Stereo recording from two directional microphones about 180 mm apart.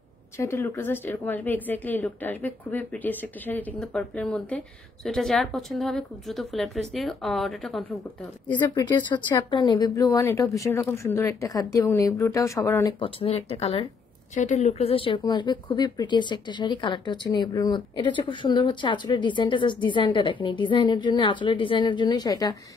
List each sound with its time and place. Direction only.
0.4 s a woman's voice: 15° left (ahead or behind)
9.1 s a woman's voice: 25° left (ahead or behind)
13.0 s speech: 30° left (ahead or behind)